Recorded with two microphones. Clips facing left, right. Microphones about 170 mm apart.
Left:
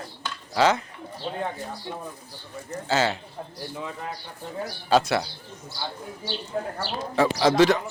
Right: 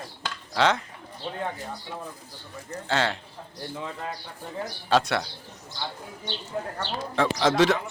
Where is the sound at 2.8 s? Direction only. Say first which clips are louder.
Left 2 dB; 5° left (ahead or behind).